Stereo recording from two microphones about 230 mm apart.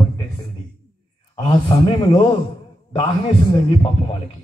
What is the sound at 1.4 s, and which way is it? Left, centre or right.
A man's voice, centre.